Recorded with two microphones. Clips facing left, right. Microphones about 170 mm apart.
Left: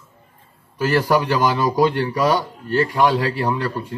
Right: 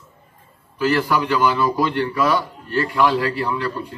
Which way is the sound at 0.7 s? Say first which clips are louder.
Left 1 dB; 40° left (ahead or behind).